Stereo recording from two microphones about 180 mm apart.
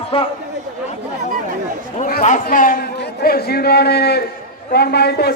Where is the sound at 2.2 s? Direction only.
45° left (ahead or behind).